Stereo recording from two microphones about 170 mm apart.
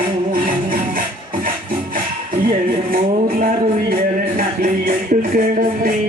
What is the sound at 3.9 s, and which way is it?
Music, 55° right (ahead or behind).